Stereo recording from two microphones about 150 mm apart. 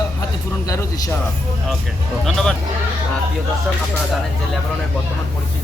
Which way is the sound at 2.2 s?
5° left (ahead or behind).